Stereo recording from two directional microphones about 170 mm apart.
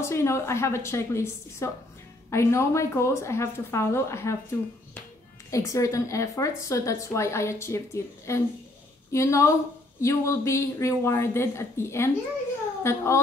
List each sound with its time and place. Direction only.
0.0 s a woman's voice: 15° left (ahead or behind)